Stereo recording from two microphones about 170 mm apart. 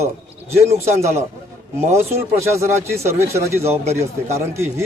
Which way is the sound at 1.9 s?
15° right (ahead or behind).